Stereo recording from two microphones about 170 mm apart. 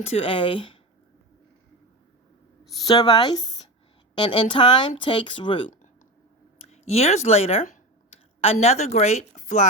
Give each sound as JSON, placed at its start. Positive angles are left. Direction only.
{"t": 0.0, "sound": "speech", "side_deg": 35}
{"t": 2.8, "sound": "speech", "side_deg": 25}